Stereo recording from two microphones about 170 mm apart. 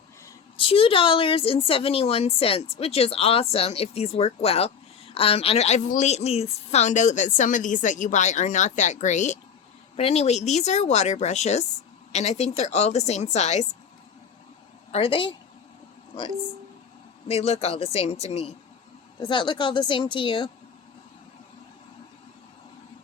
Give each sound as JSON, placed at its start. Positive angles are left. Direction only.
{"t": 0.5, "sound": "a woman's voice", "side_deg": 30}
{"t": 14.9, "sound": "a woman's voice", "side_deg": 30}
{"t": 17.2, "sound": "a woman's voice", "side_deg": 35}